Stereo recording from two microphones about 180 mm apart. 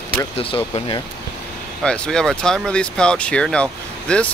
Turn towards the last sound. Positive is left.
turn(degrees=5)  # may be behind; listen again after turning